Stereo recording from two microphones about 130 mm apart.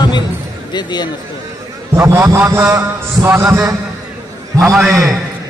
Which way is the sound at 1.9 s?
20° right (ahead or behind).